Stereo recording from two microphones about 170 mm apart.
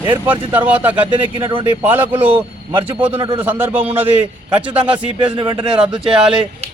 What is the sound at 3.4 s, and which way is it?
Speech, 10° right (ahead or behind).